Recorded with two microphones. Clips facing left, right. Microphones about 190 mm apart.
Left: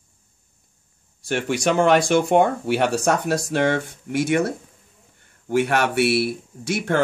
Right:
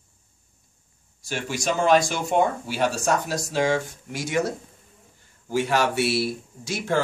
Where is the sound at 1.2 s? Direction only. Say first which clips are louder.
Left 6 dB; 60° left (ahead or behind).